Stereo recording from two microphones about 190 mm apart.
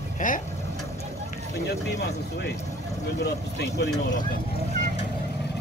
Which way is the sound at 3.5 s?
60° left (ahead or behind).